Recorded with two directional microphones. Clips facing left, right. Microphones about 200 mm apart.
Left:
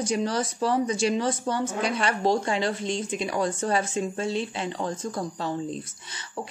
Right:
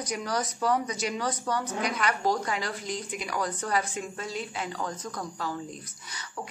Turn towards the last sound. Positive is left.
turn(degrees=25)  # may be behind; listen again after turning